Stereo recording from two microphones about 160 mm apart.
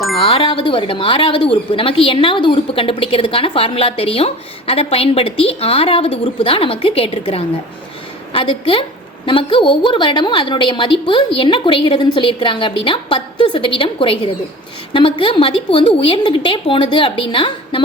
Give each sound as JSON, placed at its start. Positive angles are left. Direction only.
{"t": 0.2, "sound": "a woman's voice", "side_deg": 30}